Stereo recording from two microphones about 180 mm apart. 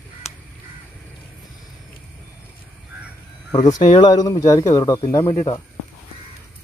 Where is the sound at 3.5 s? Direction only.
20° left (ahead or behind).